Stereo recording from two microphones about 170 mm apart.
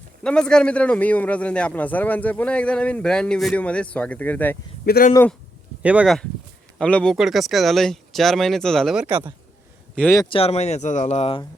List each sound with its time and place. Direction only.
0.2 s a man's voice: 5° left (ahead or behind)
4.9 s speech: 60° left (ahead or behind)
5.8 s speech: 5° right (ahead or behind)
6.7 s speech: 5° left (ahead or behind)
9.9 s speech: 5° left (ahead or behind)
10.2 s speech: 30° left (ahead or behind)